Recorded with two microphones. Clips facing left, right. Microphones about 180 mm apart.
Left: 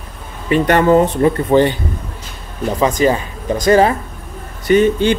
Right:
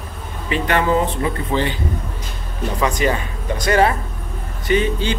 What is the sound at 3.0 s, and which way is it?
Speech, 35° left (ahead or behind).